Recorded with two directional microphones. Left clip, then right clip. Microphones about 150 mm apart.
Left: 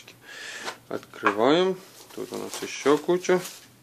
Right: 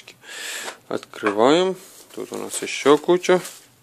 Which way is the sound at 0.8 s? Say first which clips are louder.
Right 2 dB; 55° right (ahead or behind).